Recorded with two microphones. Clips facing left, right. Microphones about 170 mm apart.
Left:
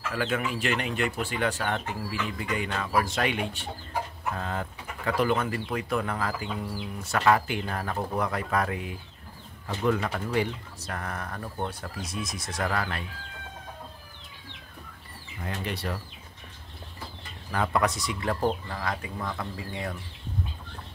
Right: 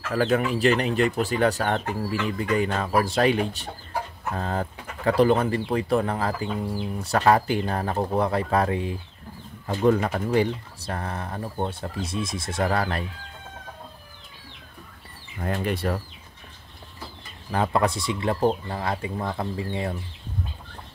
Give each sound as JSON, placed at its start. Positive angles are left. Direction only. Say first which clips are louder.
{"t": 0.1, "sound": "speech", "louder": "right 8 dB", "side_deg": -40}
{"t": 15.4, "sound": "speech", "louder": "right 7 dB", "side_deg": -50}
{"t": 17.5, "sound": "speech", "louder": "right 3 dB", "side_deg": -30}